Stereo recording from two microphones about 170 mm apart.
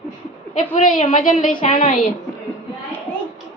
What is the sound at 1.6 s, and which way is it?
Speech, 35° left (ahead or behind).